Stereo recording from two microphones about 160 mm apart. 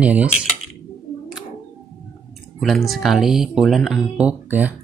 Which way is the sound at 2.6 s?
Centre (ahead or behind).